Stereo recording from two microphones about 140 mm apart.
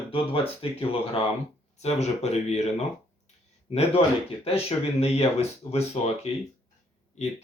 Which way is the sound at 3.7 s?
45° left (ahead or behind).